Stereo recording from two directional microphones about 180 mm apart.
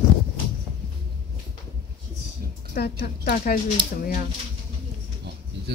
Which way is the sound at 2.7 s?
60° left (ahead or behind).